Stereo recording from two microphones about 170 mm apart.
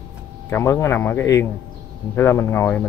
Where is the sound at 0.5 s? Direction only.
15° left (ahead or behind).